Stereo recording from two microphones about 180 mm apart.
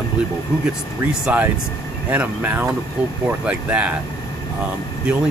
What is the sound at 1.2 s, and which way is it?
Speech, 10° right (ahead or behind).